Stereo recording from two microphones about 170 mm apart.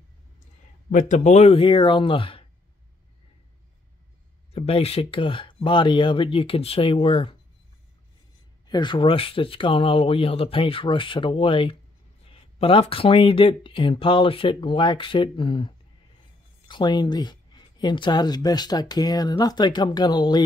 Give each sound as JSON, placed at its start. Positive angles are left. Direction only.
{"t": 0.9, "sound": "speech", "side_deg": 45}
{"t": 4.5, "sound": "speech", "side_deg": 35}
{"t": 8.6, "sound": "speech", "side_deg": 25}